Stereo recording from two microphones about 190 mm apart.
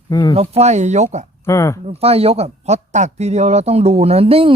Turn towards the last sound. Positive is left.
turn(degrees=-30)  # may be behind; listen again after turning